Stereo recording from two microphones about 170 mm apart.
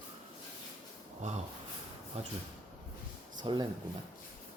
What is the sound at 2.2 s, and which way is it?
Speech, 35° right (ahead or behind).